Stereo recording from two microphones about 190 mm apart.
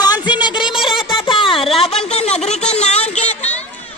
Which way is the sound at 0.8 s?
25° left (ahead or behind).